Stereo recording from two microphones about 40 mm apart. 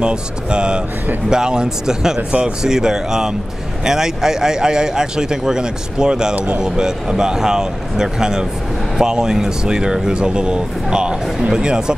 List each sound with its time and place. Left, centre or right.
0.0 s a man's voice: right